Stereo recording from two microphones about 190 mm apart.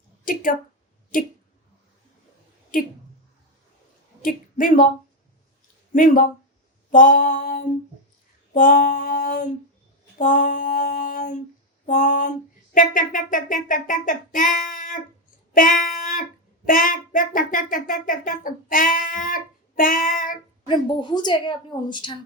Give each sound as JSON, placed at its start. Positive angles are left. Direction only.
{"t": 0.3, "sound": "a woman's voice", "side_deg": 45}
{"t": 2.7, "sound": "speech", "side_deg": 45}
{"t": 4.2, "sound": "speech", "side_deg": 45}
{"t": 5.9, "sound": "speech", "side_deg": 45}
{"t": 15.5, "sound": "a sound", "side_deg": 45}
{"t": 16.6, "sound": "speech", "side_deg": 45}
{"t": 20.7, "sound": "a woman's voice", "side_deg": 25}